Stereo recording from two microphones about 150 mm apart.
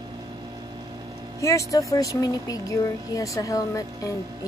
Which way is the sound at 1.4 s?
20° left (ahead or behind).